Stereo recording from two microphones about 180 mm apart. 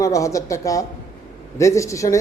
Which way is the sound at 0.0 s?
20° left (ahead or behind).